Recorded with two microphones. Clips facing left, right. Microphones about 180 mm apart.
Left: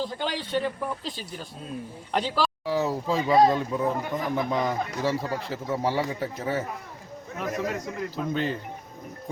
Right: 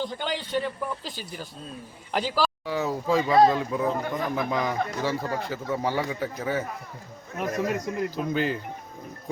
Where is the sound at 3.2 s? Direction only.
15° left (ahead or behind).